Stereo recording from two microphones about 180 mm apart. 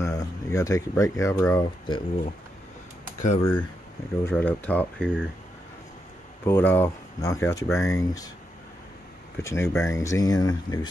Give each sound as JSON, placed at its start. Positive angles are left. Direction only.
{"t": 0.0, "sound": "speech", "side_deg": 15}
{"t": 3.2, "sound": "speech", "side_deg": 40}
{"t": 4.2, "sound": "speech", "side_deg": 10}
{"t": 6.4, "sound": "speech", "side_deg": 10}
{"t": 9.4, "sound": "speech", "side_deg": 15}